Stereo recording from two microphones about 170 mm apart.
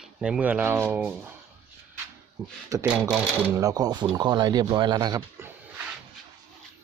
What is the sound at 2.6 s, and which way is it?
Speech, 20° right (ahead or behind).